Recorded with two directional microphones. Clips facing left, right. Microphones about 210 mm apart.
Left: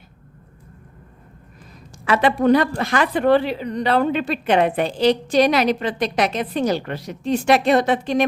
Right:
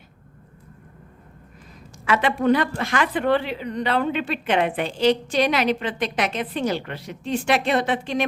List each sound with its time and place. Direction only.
2.0 s a woman's voice: 35° left (ahead or behind)